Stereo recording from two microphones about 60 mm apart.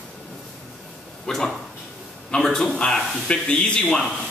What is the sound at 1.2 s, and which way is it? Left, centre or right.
A man's voice, centre.